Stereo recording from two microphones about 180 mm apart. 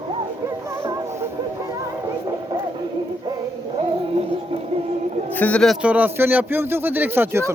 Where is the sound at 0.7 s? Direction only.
15° right (ahead or behind).